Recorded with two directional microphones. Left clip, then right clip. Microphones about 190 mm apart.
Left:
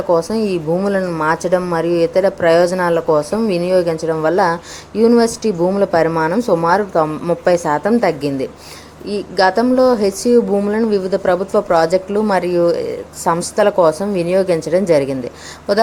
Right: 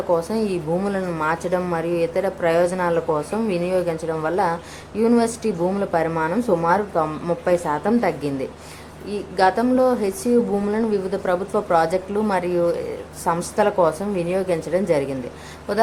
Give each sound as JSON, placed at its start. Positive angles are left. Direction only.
{"t": 0.1, "sound": "speech", "side_deg": 25}